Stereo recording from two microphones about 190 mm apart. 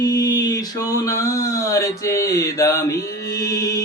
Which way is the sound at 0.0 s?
20° left (ahead or behind).